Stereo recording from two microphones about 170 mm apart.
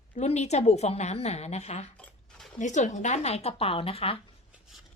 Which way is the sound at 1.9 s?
5° left (ahead or behind).